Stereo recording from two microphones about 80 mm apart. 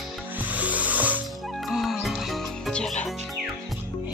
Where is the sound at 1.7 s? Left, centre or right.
Centre.